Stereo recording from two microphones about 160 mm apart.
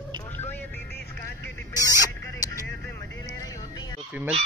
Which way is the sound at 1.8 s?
20° right (ahead or behind).